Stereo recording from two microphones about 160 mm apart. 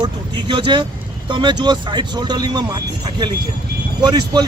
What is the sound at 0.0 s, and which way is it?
Speech, 30° right (ahead or behind).